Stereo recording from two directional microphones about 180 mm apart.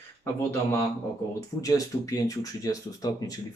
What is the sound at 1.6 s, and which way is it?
Speech, 20° left (ahead or behind).